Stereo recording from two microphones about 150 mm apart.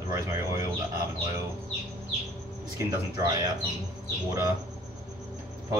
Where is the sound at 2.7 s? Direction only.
20° right (ahead or behind).